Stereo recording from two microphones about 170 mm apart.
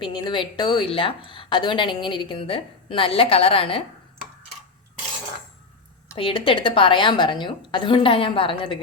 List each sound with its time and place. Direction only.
0.0 s a woman's voice: 30° left (ahead or behind)
6.1 s a woman's voice: 30° left (ahead or behind)